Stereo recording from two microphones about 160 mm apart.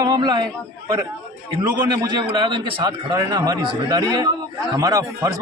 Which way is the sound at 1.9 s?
25° right (ahead or behind).